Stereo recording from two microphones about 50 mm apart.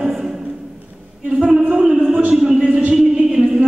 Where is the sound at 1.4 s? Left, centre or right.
Centre.